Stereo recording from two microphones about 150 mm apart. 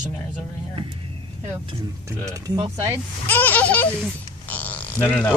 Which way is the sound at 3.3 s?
10° left (ahead or behind).